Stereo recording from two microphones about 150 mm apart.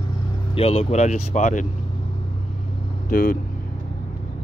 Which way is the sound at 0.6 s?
40° left (ahead or behind).